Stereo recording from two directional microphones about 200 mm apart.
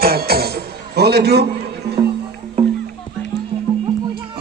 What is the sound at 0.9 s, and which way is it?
A man's voice, 55° right (ahead or behind).